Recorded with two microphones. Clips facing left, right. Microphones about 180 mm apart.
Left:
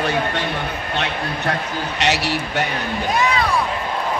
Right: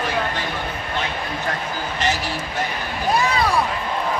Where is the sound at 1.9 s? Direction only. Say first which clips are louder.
Left 3 dB; 75° left (ahead or behind).